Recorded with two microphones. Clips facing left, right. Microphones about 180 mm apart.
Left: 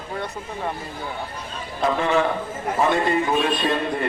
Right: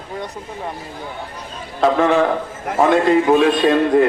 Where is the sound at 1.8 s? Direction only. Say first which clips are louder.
Right 7 dB; 70° right (ahead or behind).